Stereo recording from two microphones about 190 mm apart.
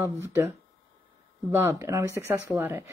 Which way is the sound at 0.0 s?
10° right (ahead or behind).